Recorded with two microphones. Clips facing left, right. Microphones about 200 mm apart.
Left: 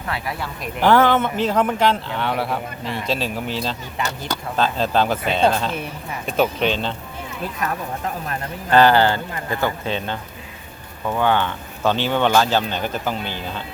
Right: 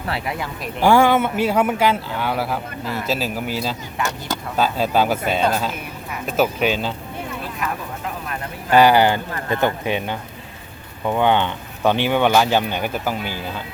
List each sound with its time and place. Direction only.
0.1 s speech: 20° right (ahead or behind)
0.6 s speech: 10° right (ahead or behind)
8.7 s speech: 10° right (ahead or behind)